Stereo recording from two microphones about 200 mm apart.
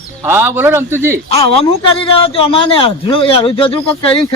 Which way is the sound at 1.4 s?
30° left (ahead or behind).